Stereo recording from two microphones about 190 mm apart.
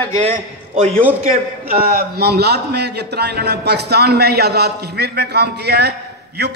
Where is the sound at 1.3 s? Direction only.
50° right (ahead or behind).